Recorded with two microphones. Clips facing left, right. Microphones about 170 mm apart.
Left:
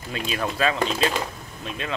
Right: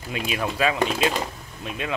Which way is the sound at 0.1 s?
10° right (ahead or behind).